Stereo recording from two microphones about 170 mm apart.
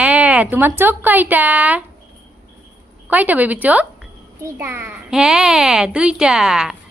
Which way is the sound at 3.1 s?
10° right (ahead or behind).